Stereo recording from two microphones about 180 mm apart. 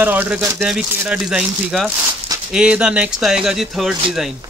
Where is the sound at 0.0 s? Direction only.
10° right (ahead or behind).